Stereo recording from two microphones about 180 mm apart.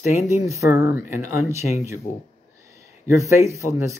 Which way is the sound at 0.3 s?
15° right (ahead or behind).